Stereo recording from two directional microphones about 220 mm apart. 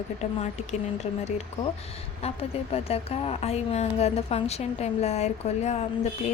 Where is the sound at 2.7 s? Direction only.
25° left (ahead or behind).